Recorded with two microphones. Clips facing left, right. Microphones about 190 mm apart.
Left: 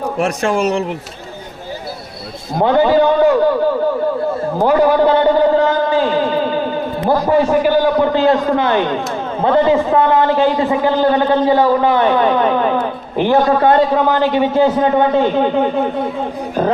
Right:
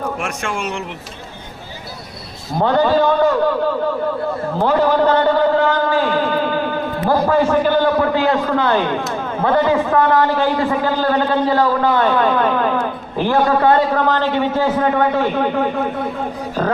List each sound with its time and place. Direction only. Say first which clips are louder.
0.2 s speech: left 8 dB; 35° left (ahead or behind)
2.6 s a man's voice: left 3 dB; 15° left (ahead or behind)
4.5 s a man's voice: left 3 dB; 10° left (ahead or behind)
5.6 s a sound: left 2 dB; 20° left (ahead or behind)
8.0 s a man's voice: left 3 dB; 20° left (ahead or behind)